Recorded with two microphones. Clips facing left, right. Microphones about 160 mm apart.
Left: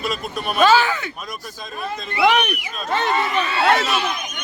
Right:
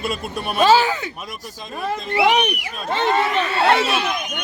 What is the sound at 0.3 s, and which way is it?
Speech, 35° right (ahead or behind).